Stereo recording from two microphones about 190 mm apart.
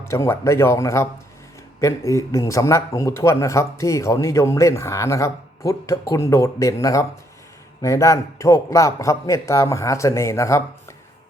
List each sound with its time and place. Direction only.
0.0 s a man's voice: 15° left (ahead or behind)